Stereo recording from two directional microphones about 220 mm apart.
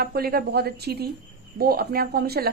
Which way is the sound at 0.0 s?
45° right (ahead or behind).